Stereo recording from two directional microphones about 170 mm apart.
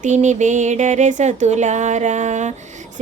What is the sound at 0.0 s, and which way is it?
Music, 45° right (ahead or behind).